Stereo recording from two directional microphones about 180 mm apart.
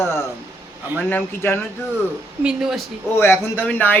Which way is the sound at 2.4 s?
Centre (ahead or behind).